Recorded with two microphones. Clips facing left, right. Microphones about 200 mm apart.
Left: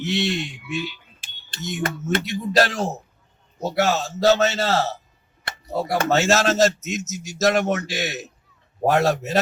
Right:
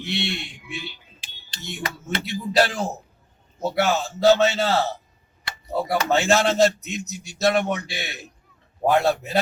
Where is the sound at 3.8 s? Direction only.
40° left (ahead or behind).